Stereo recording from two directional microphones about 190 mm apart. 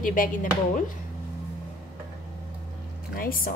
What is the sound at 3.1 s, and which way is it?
Speech, 50° left (ahead or behind).